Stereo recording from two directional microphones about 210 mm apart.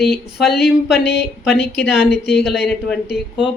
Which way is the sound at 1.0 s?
50° left (ahead or behind).